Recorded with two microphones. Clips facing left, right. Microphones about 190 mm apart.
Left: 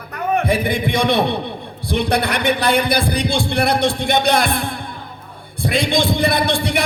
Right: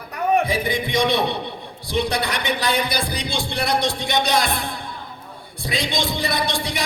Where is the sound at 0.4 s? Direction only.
55° left (ahead or behind).